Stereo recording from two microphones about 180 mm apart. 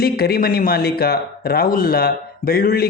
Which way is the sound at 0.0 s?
60° left (ahead or behind).